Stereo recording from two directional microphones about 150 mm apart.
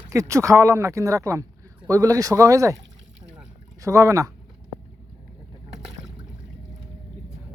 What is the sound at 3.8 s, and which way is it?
Speech, 20° right (ahead or behind).